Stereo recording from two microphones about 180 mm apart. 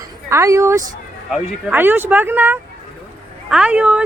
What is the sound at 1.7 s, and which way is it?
Speech, 10° right (ahead or behind).